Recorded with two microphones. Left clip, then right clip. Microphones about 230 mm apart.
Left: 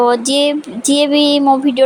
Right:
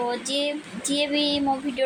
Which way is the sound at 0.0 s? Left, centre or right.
Left.